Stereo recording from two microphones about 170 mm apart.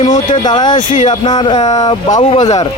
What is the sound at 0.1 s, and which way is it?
Speech, 25° left (ahead or behind).